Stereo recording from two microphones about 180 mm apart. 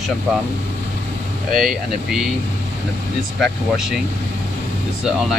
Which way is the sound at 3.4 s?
Centre (ahead or behind).